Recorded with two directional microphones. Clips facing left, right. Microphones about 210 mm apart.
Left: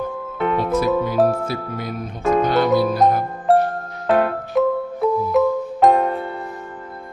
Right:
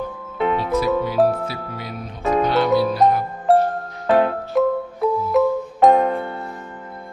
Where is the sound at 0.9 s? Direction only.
Centre (ahead or behind).